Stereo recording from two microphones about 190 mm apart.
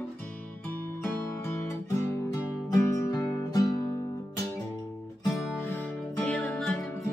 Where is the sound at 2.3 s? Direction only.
15° left (ahead or behind).